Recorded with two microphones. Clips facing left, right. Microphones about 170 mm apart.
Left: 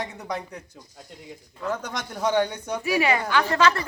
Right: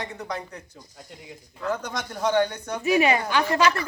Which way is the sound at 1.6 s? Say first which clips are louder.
Right 1 dB; 5° left (ahead or behind).